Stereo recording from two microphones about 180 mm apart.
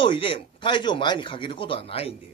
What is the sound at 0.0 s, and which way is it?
Speech, 25° left (ahead or behind).